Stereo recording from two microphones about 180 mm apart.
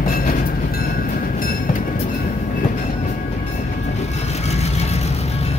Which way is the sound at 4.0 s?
35° left (ahead or behind).